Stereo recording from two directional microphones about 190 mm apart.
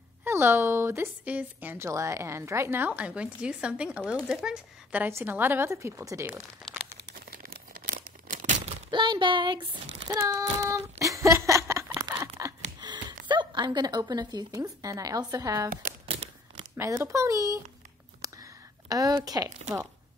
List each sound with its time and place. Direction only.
0.2 s a woman's voice: 10° right (ahead or behind)
7.2 s crumpling: 50° right (ahead or behind)
8.9 s speech: 25° right (ahead or behind)
10.0 s child singing: 15° right (ahead or behind)
12.8 s a sound: 20° right (ahead or behind)
13.3 s a woman's voice: 25° right (ahead or behind)
16.1 s a sound: 30° right (ahead or behind)
16.7 s a woman's voice: 15° right (ahead or behind)
18.2 s a sound: 20° right (ahead or behind)